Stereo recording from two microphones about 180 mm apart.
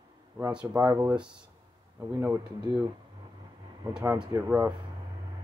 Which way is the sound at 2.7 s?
20° right (ahead or behind).